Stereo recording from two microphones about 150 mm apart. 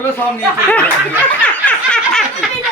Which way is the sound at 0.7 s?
10° left (ahead or behind).